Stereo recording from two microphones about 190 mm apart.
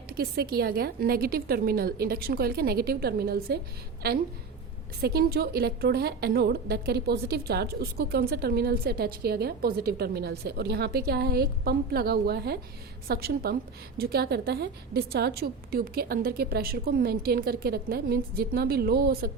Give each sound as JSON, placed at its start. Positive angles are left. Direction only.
{"t": 0.1, "sound": "a woman's voice", "side_deg": -55}
{"t": 5.0, "sound": "a woman's voice", "side_deg": -55}